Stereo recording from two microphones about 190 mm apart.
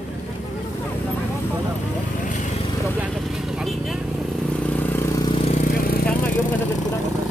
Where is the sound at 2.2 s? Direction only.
40° left (ahead or behind).